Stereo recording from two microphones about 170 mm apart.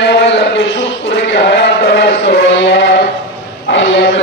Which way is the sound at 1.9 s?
90° left.